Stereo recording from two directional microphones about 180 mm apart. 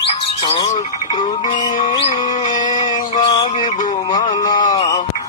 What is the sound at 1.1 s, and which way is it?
Music, 25° left (ahead or behind).